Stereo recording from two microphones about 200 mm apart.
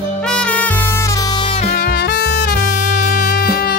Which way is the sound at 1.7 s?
50° left (ahead or behind).